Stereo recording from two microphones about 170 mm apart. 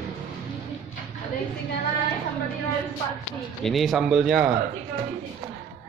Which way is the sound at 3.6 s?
Centre (ahead or behind).